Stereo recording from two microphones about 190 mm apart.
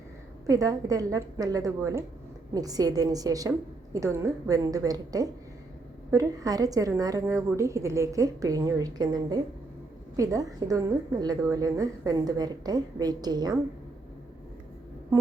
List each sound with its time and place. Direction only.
0.4 s a woman's voice: 20° right (ahead or behind)